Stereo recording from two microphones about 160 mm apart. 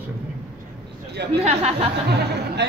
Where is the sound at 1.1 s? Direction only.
90° right.